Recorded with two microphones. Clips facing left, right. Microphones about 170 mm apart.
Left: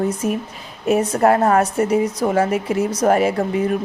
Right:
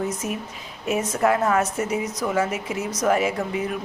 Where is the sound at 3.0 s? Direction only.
45° left (ahead or behind).